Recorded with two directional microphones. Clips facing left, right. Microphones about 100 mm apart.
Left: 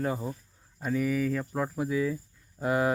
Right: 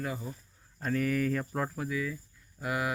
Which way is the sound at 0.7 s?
5° left (ahead or behind).